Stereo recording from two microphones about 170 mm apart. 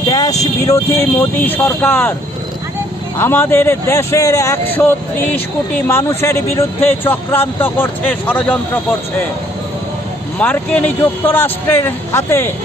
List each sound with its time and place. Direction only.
0.1 s vehicle: 20° left (ahead or behind)
0.7 s speech: 10° left (ahead or behind)
3.2 s speech: 15° left (ahead or behind)
10.4 s speech: 10° left (ahead or behind)